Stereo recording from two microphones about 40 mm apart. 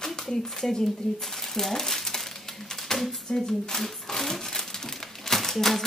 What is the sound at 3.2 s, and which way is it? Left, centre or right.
Crumpling, centre.